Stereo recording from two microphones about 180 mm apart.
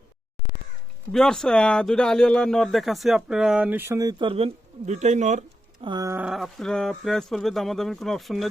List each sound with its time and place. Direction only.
1.1 s speech: 5° left (ahead or behind); by 5.5 s 40° right (ahead or behind)
5.8 s speech: 20° right (ahead or behind)
6.2 s speech: centre (ahead or behind)